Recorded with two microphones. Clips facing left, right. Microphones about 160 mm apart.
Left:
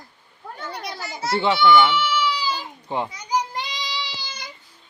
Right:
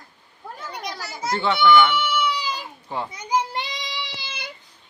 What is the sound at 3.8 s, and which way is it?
Child singing, 55° right (ahead or behind).